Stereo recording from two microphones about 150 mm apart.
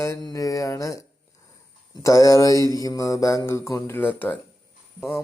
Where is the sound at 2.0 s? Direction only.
20° left (ahead or behind).